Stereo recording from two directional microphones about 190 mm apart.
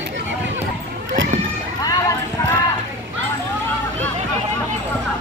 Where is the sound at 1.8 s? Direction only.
15° left (ahead or behind).